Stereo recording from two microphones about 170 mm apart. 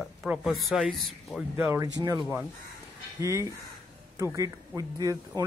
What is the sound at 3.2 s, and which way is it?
Speech, 20° right (ahead or behind).